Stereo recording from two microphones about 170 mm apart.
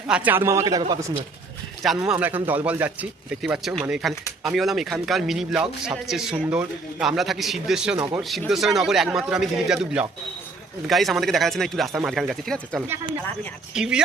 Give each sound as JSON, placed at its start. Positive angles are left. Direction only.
{"t": 0.1, "sound": "speech", "side_deg": -10}
{"t": 2.0, "sound": "a man's voice", "side_deg": -10}